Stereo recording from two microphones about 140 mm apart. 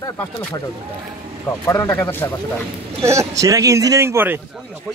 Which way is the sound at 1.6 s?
20° left (ahead or behind).